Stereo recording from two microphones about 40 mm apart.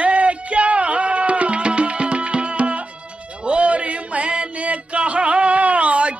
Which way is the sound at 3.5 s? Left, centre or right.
Right.